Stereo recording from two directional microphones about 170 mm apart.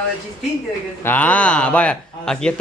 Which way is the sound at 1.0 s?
10° left (ahead or behind).